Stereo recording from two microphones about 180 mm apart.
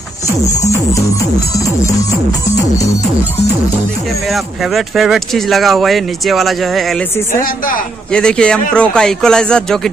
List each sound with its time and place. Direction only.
4.3 s speech: centre (ahead or behind)
7.4 s a woman's voice: 50° left (ahead or behind)
8.1 s speech: 5° left (ahead or behind)